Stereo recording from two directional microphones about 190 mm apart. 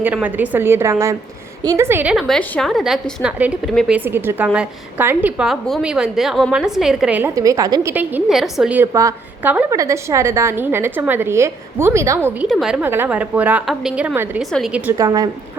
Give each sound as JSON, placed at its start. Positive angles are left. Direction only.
{"t": 0.0, "sound": "a woman's voice", "side_deg": -10}
{"t": 12.5, "sound": "a woman's voice", "side_deg": 0}
{"t": 14.9, "sound": "a woman's voice", "side_deg": -20}